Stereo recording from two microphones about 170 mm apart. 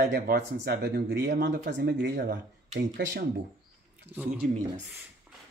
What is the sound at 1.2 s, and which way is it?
Speech, 85° right.